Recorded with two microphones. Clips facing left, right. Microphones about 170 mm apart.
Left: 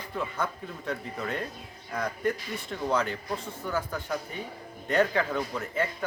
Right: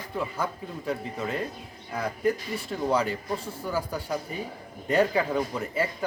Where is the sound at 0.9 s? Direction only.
5° right (ahead or behind).